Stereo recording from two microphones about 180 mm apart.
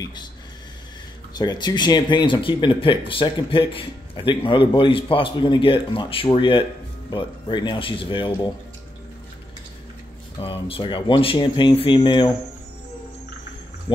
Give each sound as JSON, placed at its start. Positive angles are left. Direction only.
{"t": 0.0, "sound": "speech", "side_deg": 25}
{"t": 1.3, "sound": "speech", "side_deg": 25}
{"t": 10.4, "sound": "speech", "side_deg": 30}